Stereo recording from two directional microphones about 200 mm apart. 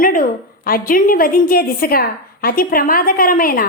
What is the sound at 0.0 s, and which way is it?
A woman's voice, 45° left (ahead or behind).